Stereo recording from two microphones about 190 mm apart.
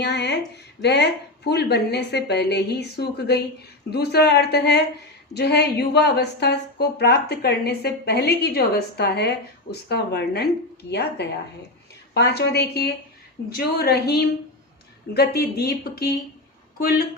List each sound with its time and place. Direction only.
0.0 s a woman's voice: 65° left (ahead or behind)